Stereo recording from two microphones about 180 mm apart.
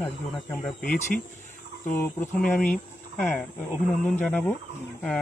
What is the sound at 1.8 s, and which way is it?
Speech, 10° left (ahead or behind).